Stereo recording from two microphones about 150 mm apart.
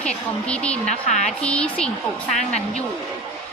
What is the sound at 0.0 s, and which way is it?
Speech, 5° left (ahead or behind).